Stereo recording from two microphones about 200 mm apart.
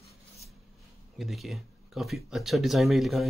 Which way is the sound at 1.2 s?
Centre (ahead or behind).